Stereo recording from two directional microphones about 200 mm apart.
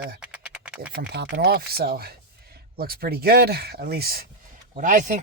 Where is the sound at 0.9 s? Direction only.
55° right (ahead or behind).